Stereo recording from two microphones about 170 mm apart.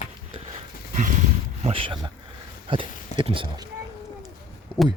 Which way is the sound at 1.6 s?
35° right (ahead or behind).